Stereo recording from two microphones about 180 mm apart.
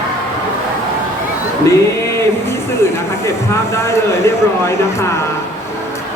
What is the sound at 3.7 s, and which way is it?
Speech, 15° left (ahead or behind).